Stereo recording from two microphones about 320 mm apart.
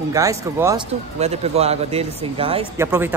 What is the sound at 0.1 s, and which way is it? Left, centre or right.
Speech, centre.